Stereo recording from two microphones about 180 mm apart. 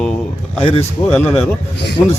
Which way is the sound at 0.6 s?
35° left (ahead or behind).